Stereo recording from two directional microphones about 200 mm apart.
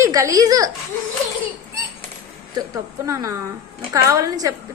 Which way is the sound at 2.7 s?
15° right (ahead or behind).